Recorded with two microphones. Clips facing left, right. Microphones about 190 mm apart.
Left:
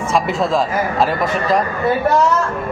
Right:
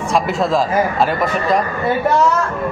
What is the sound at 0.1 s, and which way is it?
Speech, centre (ahead or behind).